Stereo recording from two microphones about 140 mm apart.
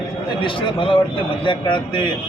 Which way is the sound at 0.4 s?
35° left (ahead or behind).